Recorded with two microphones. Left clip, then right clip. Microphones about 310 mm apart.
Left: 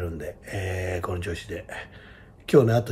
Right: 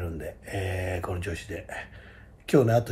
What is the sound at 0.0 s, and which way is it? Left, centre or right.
Speech, centre.